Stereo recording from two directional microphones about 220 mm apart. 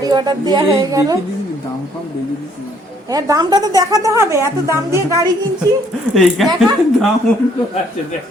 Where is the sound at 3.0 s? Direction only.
15° right (ahead or behind).